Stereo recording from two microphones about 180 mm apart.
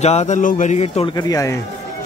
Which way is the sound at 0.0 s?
40° left (ahead or behind).